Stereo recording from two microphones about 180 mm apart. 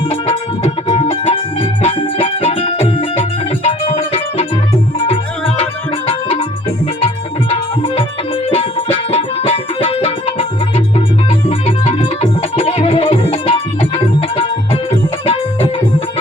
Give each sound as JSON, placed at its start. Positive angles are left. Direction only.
{"t": 0.1, "sound": "music", "side_deg": 30}
{"t": 8.4, "sound": "music", "side_deg": 30}